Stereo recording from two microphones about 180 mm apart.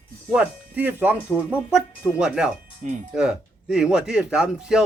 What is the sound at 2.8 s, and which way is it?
Speech, 45° right (ahead or behind).